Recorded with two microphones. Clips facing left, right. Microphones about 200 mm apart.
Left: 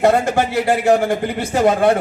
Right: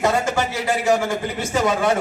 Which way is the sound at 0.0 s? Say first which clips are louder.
Left 5 dB; 55° left (ahead or behind).